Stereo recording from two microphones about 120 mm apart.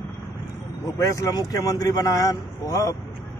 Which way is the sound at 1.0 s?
30° left (ahead or behind).